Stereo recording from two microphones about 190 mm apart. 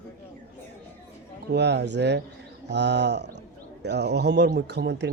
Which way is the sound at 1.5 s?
65° right (ahead or behind).